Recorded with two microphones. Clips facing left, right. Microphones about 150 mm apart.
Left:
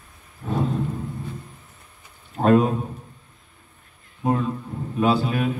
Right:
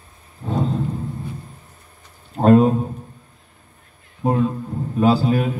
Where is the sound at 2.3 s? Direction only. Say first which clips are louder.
Right 4 dB; 35° right (ahead or behind).